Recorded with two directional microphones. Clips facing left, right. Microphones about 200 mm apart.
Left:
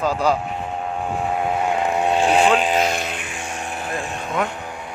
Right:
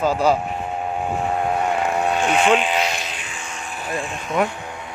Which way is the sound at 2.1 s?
35° left (ahead or behind).